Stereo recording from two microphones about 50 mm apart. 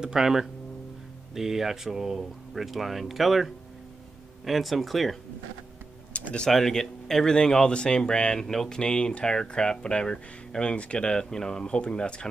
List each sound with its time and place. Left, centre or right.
0.0 s speech: centre
6.1 s a sound: left
6.5 s speech: centre